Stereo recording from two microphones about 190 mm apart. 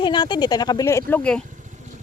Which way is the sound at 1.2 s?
5° left (ahead or behind).